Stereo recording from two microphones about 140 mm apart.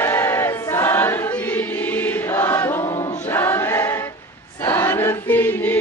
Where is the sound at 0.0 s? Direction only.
15° left (ahead or behind).